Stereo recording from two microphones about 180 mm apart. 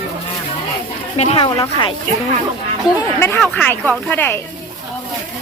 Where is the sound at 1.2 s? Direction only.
30° left (ahead or behind).